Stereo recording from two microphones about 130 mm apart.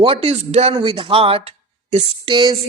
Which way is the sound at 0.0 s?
45° right (ahead or behind).